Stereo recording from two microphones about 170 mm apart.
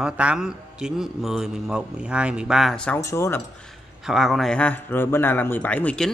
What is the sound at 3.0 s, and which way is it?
Speech, 15° left (ahead or behind).